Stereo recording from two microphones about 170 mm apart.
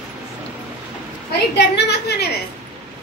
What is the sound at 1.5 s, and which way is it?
Speech, 80° left.